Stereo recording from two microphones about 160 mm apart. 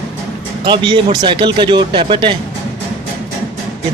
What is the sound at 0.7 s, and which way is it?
Speech, 30° right (ahead or behind).